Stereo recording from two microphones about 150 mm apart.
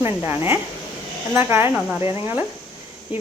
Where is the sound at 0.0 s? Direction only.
15° right (ahead or behind).